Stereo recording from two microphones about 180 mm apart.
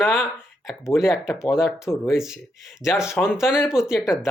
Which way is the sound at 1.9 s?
Centre (ahead or behind).